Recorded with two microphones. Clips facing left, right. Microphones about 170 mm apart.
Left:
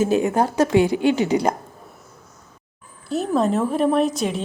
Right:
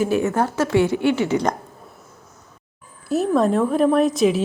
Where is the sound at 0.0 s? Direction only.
20° left (ahead or behind).